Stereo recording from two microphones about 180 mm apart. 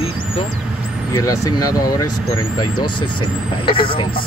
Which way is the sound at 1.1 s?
20° left (ahead or behind).